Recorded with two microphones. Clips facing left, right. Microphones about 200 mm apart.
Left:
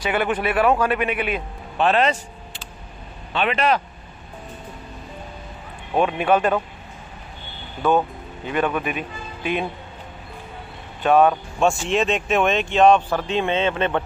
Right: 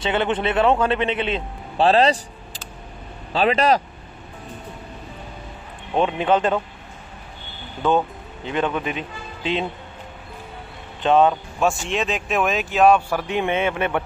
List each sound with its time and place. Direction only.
0.0 s a man's voice: 25° right (ahead or behind)
6.1 s a man's voice: 20° right (ahead or behind)
8.7 s speech: 20° right (ahead or behind)
11.0 s speech: 20° right (ahead or behind)
11.6 s speech: centre (ahead or behind)